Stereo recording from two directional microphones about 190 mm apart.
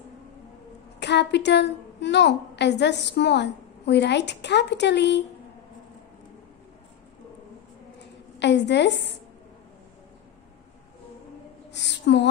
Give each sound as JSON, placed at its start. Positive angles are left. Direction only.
{"t": 0.9, "sound": "a woman's voice", "side_deg": 65}
{"t": 8.4, "sound": "a woman's voice", "side_deg": 65}
{"t": 11.7, "sound": "a woman's voice", "side_deg": 65}